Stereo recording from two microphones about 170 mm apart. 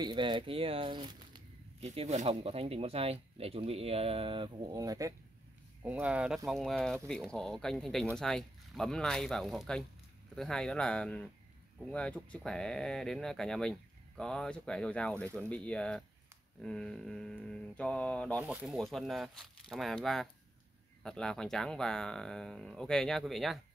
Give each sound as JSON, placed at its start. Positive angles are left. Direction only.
{"t": 0.0, "sound": "speech", "side_deg": -25}
{"t": 1.9, "sound": "speech", "side_deg": -40}
{"t": 5.8, "sound": "speech", "side_deg": -10}
{"t": 18.4, "sound": "speech", "side_deg": -10}